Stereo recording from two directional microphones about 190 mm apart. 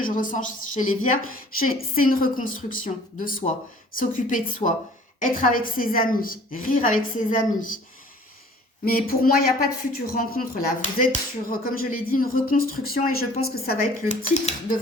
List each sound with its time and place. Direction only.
0.0 s a woman's voice: 45° left (ahead or behind)
8.8 s a woman's voice: 50° left (ahead or behind)